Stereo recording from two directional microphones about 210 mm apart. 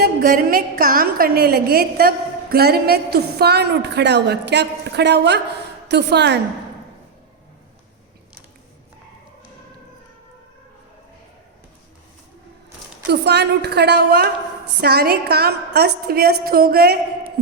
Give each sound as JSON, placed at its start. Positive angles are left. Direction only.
{"t": 0.0, "sound": "a woman's voice", "side_deg": -45}
{"t": 13.1, "sound": "a woman's voice", "side_deg": -50}